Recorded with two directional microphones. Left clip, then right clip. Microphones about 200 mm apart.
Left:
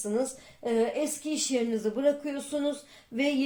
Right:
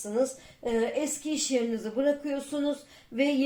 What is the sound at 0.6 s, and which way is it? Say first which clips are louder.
Speech: left 1 dB; 35° left (ahead or behind).